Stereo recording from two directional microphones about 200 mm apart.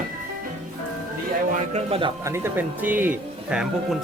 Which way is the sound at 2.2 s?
10° right (ahead or behind).